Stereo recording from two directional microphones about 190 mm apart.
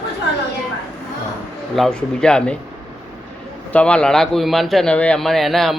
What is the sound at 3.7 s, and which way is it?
A man's voice, 5° left (ahead or behind).